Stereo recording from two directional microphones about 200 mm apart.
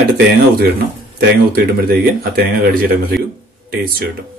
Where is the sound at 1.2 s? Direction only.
50° right (ahead or behind).